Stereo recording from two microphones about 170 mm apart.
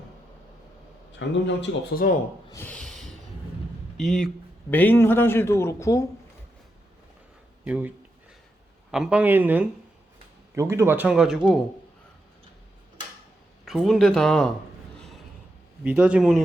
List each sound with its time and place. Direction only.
1.2 s a man's voice: 90° left
2.0 s speech: 55° left (ahead or behind)
2.5 s a sound: 10° left (ahead or behind)
3.9 s a man's voice: centre (ahead or behind); by 6.1 s 20° left (ahead or behind)
7.6 s a man's voice: 10° right (ahead or behind)
13.7 s speech: centre (ahead or behind)
14.9 s a sound: centre (ahead or behind)
15.8 s a man's voice: 5° right (ahead or behind)